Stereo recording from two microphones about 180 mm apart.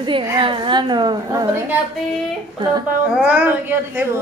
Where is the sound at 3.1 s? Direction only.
5° right (ahead or behind).